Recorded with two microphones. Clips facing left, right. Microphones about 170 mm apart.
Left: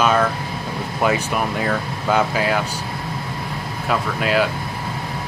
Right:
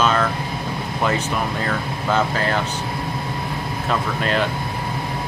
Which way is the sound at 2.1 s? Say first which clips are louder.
Left 2 dB; 10° left (ahead or behind).